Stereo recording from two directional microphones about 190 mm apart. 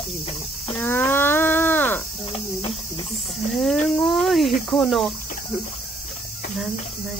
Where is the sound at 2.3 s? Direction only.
30° left (ahead or behind).